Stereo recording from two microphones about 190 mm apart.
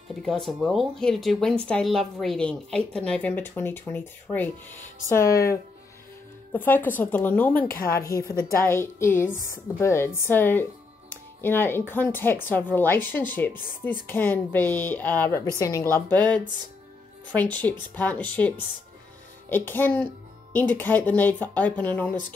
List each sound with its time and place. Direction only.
0.1 s speech: centre (ahead or behind)
19.5 s speech: 10° left (ahead or behind)